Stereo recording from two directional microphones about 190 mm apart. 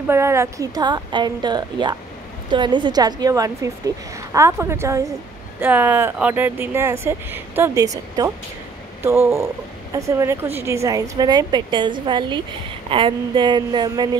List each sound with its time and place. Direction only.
0.1 s a woman's voice: 15° right (ahead or behind)